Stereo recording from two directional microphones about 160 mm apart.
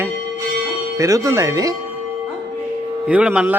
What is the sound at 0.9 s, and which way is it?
Speech, 20° right (ahead or behind).